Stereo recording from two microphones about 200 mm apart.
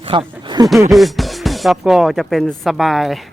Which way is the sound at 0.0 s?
25° right (ahead or behind).